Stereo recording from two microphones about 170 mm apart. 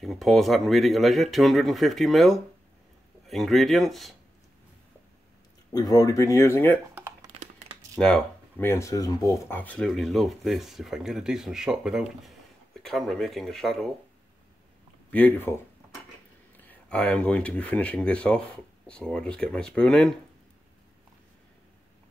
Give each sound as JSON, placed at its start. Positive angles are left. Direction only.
{"t": 0.0, "sound": "speech", "side_deg": 0}
{"t": 5.7, "sound": "speech", "side_deg": 20}
{"t": 7.0, "sound": "typing", "side_deg": -10}
{"t": 8.0, "sound": "speech", "side_deg": 10}
{"t": 9.6, "sound": "speech", "side_deg": 5}
{"t": 15.0, "sound": "speech", "side_deg": 10}